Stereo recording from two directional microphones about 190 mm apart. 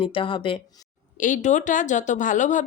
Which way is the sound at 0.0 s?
25° left (ahead or behind).